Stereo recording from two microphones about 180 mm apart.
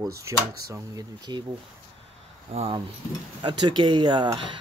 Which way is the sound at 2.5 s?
35° right (ahead or behind).